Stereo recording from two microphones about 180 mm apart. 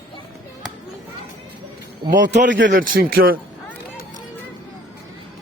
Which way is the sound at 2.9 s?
55° right (ahead or behind).